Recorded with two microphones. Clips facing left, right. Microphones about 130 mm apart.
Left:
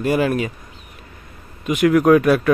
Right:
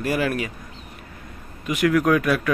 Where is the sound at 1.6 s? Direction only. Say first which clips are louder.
Left 5 dB; 20° left (ahead or behind).